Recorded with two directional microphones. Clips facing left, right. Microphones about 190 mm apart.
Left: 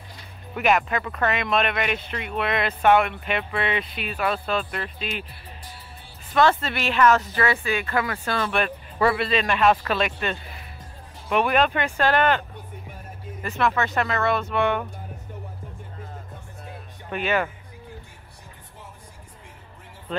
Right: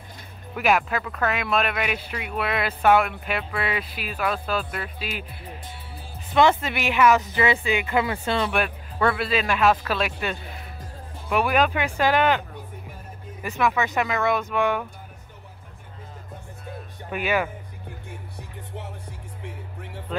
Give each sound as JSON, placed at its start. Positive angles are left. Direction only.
{"t": 0.6, "sound": "speech", "side_deg": -5}
{"t": 6.3, "sound": "speech", "side_deg": -15}
{"t": 8.5, "sound": "speech", "side_deg": -5}
{"t": 17.1, "sound": "speech", "side_deg": -10}